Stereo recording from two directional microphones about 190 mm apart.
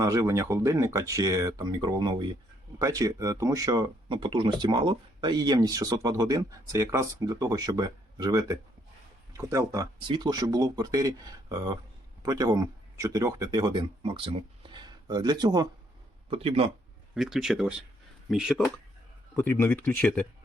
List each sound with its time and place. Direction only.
0.0 s speech: 15° right (ahead or behind)
17.2 s speech: centre (ahead or behind)
19.4 s speech: 10° left (ahead or behind)